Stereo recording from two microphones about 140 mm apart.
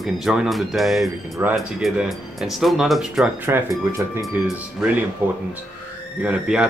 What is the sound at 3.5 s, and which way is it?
Speech, 20° right (ahead or behind).